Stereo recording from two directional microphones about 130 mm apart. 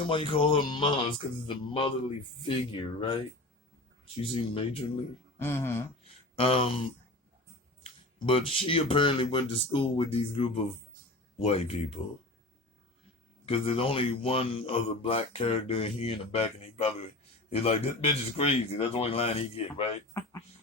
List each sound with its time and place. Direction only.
0.1 s speech: 45° left (ahead or behind)
4.0 s speech: 45° left (ahead or behind)
5.4 s speech: 20° left (ahead or behind)
6.1 s speech: 45° left (ahead or behind)
7.9 s speech: 45° left (ahead or behind)
13.4 s speech: 45° left (ahead or behind)